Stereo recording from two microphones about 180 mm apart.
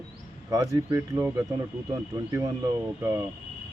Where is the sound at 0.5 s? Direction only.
20° right (ahead or behind).